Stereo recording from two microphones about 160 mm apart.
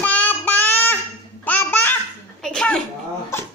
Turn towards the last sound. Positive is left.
turn(degrees=15)  # may be behind; listen again after turning